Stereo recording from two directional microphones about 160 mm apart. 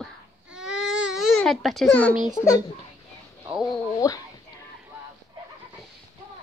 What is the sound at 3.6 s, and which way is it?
Speech, 25° left (ahead or behind).